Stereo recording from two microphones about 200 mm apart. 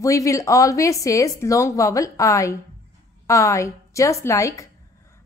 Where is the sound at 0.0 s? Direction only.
15° left (ahead or behind).